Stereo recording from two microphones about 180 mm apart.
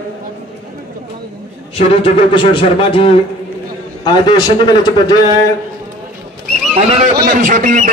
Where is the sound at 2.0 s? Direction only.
30° left (ahead or behind).